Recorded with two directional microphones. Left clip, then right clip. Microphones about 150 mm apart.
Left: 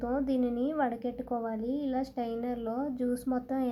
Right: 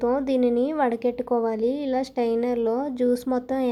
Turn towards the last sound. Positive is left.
turn(degrees=-30)  # may be behind; listen again after turning